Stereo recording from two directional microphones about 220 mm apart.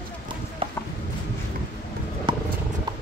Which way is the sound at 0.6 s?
25° right (ahead or behind).